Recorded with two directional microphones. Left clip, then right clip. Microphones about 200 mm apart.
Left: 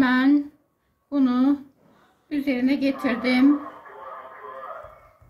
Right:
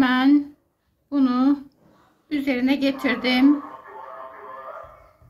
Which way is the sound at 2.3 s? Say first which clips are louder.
Right 1 dB; 20° right (ahead or behind).